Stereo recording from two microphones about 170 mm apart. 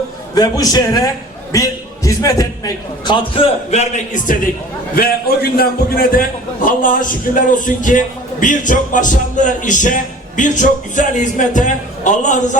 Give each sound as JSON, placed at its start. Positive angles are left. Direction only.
{"t": 0.3, "sound": "a man's voice", "side_deg": 20}
{"t": 3.3, "sound": "a man's voice", "side_deg": 35}
{"t": 4.9, "sound": "a man's voice", "side_deg": 60}